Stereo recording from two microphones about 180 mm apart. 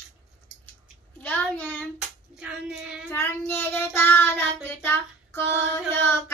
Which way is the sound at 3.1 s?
10° left (ahead or behind).